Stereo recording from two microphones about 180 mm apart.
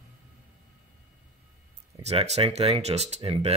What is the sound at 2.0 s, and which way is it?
Speech, 35° right (ahead or behind).